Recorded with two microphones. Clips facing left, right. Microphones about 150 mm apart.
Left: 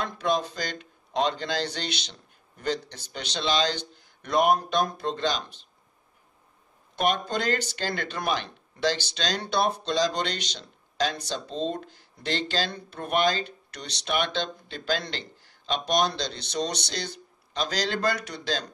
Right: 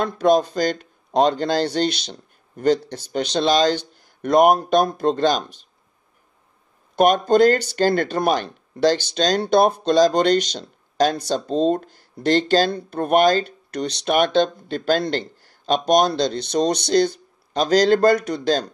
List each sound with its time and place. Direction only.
0.0 s speech: 50° right (ahead or behind)
7.0 s speech: 45° right (ahead or behind)